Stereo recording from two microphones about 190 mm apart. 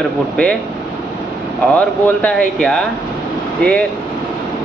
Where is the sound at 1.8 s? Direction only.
5° left (ahead or behind).